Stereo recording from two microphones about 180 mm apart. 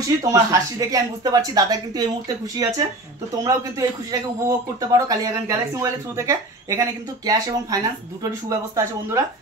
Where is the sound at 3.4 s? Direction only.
20° right (ahead or behind).